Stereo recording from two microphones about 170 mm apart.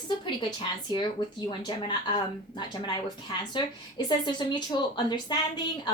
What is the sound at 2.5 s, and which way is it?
A woman's voice, 25° left (ahead or behind).